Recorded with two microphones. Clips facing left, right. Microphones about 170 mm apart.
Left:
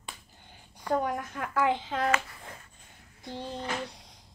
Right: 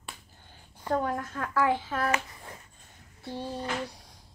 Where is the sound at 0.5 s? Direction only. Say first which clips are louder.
Even; 15° left (ahead or behind).